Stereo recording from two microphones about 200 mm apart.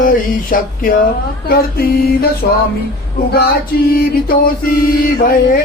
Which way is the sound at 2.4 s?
45° left (ahead or behind).